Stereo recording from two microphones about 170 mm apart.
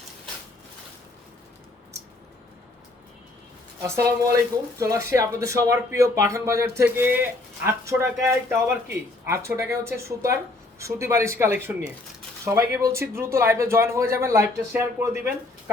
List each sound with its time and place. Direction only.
3.8 s speech: 15° right (ahead or behind)